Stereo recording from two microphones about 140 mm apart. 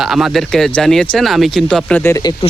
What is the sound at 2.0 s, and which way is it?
Speech, 20° left (ahead or behind).